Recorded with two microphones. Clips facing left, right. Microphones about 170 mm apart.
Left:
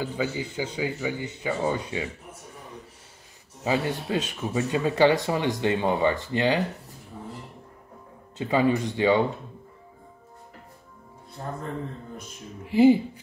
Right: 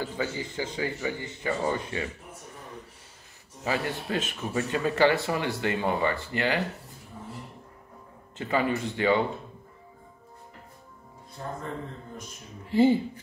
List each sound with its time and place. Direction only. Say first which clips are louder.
0.0 s speech: left 3 dB; 15° left (ahead or behind)
3.6 s speech: left 4 dB; 20° left (ahead or behind)
8.4 s speech: left 4 dB; 15° left (ahead or behind)
12.6 s speech: left 4 dB; 15° left (ahead or behind)